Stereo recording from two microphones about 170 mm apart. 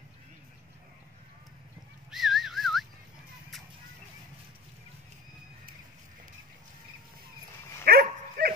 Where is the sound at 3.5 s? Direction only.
Centre (ahead or behind).